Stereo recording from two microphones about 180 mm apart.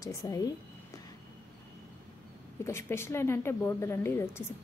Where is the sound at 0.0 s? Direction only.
20° left (ahead or behind).